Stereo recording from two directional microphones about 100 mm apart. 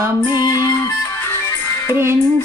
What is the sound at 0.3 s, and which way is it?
Music, 40° left (ahead or behind).